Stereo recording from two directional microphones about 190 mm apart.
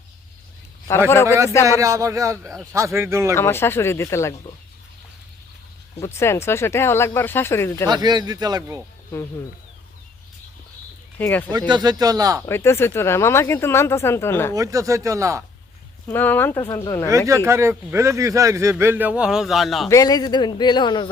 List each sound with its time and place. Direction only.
1.1 s speech: 15° left (ahead or behind)
1.8 s speech: 15° right (ahead or behind)
3.3 s speech: 10° left (ahead or behind)
6.0 s speech: 15° left (ahead or behind)
7.9 s a man's voice: 20° right (ahead or behind)
11.2 s speech: 10° left (ahead or behind)
11.7 s a man's voice: 20° right (ahead or behind)
12.5 s speech: 15° left (ahead or behind)
14.5 s speech: 15° right (ahead or behind)
16.0 s speech: 10° left (ahead or behind)
17.1 s speech: 15° right (ahead or behind); by 19.9 s centre (ahead or behind)
19.9 s speech: 20° left (ahead or behind)